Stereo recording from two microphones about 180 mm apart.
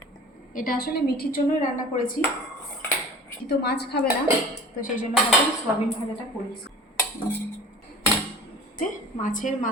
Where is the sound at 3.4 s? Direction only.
65° left (ahead or behind).